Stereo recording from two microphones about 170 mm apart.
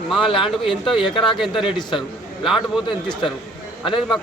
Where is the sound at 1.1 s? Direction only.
30° left (ahead or behind).